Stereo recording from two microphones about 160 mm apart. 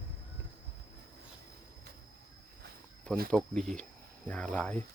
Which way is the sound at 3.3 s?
5° left (ahead or behind).